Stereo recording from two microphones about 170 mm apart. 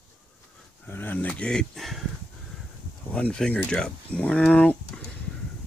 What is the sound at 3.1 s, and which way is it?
Speech, 5° left (ahead or behind).